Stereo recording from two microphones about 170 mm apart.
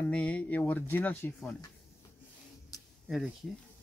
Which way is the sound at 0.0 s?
10° left (ahead or behind).